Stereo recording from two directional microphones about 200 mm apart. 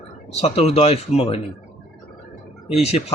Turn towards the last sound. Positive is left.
turn(degrees=30)  # may be behind; listen again after turning